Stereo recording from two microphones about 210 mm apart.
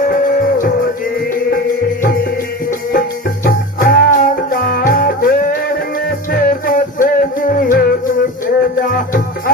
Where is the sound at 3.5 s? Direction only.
45° left (ahead or behind).